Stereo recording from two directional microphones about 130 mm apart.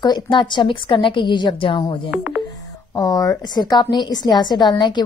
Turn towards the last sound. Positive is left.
turn(degrees=35)  # may be behind; listen again after turning